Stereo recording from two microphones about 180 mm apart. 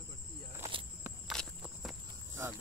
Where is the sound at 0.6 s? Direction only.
30° right (ahead or behind).